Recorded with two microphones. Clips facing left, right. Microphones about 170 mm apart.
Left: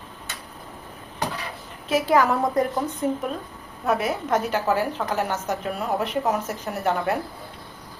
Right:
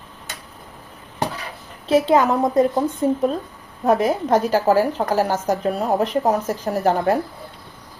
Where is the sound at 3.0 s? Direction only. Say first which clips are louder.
Right 6 dB; 35° right (ahead or behind).